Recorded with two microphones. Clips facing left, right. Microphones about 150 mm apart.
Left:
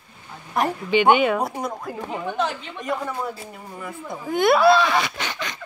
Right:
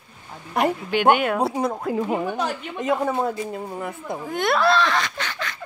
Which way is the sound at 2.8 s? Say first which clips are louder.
Right 6 dB; 20° right (ahead or behind).